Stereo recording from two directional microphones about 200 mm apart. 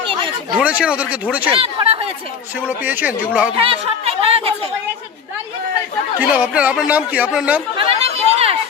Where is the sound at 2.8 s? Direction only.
10° right (ahead or behind).